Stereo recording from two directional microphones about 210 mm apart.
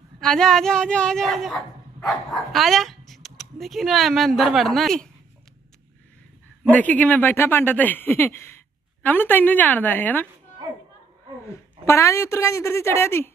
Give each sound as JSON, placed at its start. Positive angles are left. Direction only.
{"t": 0.2, "sound": "a woman's voice", "side_deg": 0}
{"t": 6.7, "sound": "speech", "side_deg": 5}
{"t": 11.8, "sound": "speech", "side_deg": 15}